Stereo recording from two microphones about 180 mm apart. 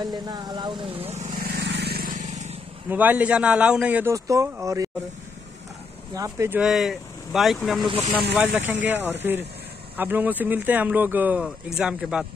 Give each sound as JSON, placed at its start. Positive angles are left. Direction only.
{"t": 0.0, "sound": "speech", "side_deg": -25}
{"t": 1.4, "sound": "vehicle", "side_deg": -60}
{"t": 2.9, "sound": "speech", "side_deg": -10}
{"t": 6.1, "sound": "speech", "side_deg": -15}
{"t": 6.6, "sound": "speech", "side_deg": 0}